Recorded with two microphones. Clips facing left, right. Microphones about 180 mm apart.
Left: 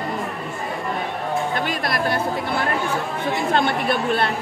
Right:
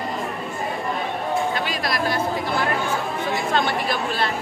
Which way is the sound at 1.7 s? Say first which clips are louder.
Left 1 dB; 55° left (ahead or behind).